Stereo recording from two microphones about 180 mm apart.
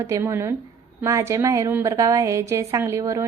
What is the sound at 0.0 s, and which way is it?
A woman's voice, 15° right (ahead or behind).